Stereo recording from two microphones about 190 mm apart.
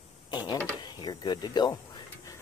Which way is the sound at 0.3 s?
20° left (ahead or behind).